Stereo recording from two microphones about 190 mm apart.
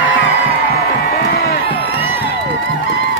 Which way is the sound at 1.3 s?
60° left (ahead or behind).